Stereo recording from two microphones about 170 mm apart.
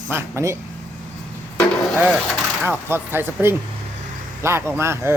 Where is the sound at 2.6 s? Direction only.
15° right (ahead or behind).